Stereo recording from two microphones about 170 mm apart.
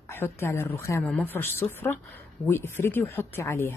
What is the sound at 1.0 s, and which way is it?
Speech, 5° left (ahead or behind).